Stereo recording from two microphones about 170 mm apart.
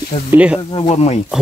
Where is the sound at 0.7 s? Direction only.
35° left (ahead or behind).